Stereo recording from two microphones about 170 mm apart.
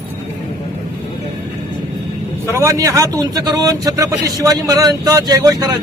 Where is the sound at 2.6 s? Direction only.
20° right (ahead or behind).